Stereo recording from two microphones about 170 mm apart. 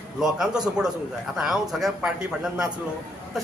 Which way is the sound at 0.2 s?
5° right (ahead or behind).